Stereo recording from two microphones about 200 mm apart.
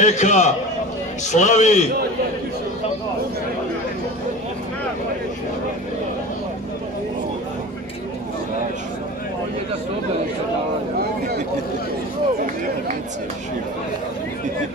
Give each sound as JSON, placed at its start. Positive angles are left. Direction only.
{"t": 0.0, "sound": "a man's voice", "side_deg": 35}